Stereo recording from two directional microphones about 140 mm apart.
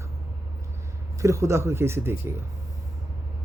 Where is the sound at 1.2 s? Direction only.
20° right (ahead or behind).